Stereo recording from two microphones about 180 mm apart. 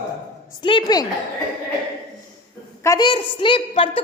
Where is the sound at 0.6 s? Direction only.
25° left (ahead or behind).